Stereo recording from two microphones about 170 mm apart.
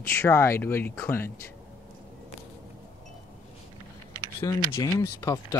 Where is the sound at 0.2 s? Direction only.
15° left (ahead or behind).